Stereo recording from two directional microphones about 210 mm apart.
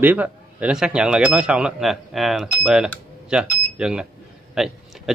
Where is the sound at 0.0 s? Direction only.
10° right (ahead or behind).